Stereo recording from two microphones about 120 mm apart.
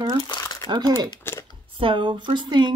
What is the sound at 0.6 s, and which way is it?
Speech, 35° right (ahead or behind).